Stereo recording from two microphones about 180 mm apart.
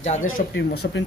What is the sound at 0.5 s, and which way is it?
Speech, 75° left (ahead or behind).